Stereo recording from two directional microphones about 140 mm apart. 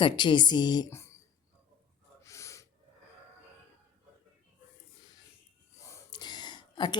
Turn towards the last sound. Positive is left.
turn(degrees=30)  # may be behind; listen again after turning